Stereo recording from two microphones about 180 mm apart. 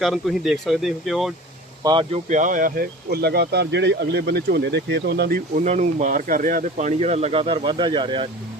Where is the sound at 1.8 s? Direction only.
25° right (ahead or behind).